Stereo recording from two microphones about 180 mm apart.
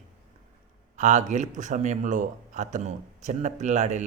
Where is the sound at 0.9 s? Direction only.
40° right (ahead or behind).